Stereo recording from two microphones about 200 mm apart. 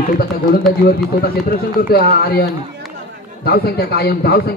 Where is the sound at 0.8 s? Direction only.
50° left (ahead or behind).